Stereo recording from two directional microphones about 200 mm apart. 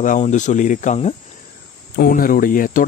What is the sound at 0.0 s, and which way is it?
Speech, 40° left (ahead or behind).